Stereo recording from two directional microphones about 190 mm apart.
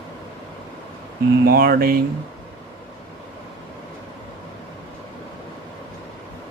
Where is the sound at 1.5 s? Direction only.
55° right (ahead or behind).